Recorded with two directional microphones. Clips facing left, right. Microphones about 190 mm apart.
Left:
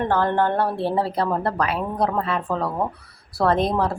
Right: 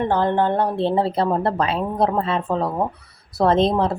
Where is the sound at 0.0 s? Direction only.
15° right (ahead or behind).